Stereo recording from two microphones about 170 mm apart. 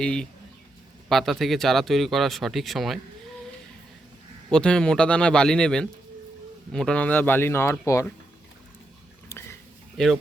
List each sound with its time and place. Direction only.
0.0 s speech: 5° left (ahead or behind)
4.5 s speech: 5° left (ahead or behind)
9.3 s a sound: 15° left (ahead or behind)